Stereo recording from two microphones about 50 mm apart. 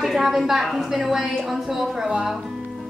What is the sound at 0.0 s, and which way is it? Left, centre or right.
A woman's voice, centre.